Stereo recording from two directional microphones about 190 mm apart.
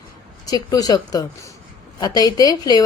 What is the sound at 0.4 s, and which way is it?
A woman's voice, 20° left (ahead or behind).